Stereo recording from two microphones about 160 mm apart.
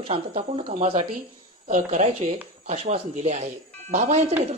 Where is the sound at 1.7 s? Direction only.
45° right (ahead or behind).